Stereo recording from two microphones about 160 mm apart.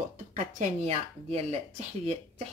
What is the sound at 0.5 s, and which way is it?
Speech, 40° right (ahead or behind).